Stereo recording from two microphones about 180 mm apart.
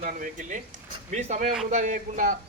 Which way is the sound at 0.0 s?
45° right (ahead or behind).